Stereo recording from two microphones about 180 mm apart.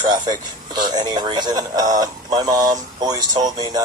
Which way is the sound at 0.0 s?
25° right (ahead or behind).